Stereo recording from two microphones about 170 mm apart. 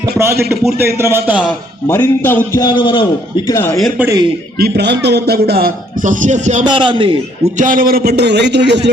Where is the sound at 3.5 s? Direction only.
15° left (ahead or behind).